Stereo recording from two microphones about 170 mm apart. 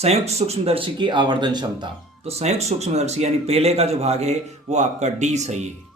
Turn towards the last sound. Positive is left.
turn(degrees=-40)  # may be behind; listen again after turning